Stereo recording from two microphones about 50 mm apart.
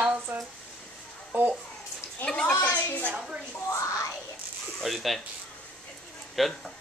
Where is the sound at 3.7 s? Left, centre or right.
Left.